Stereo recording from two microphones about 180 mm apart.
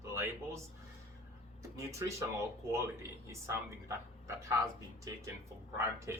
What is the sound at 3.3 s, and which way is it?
Speech, 15° right (ahead or behind).